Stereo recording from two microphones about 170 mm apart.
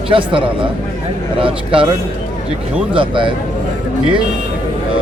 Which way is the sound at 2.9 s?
30° right (ahead or behind).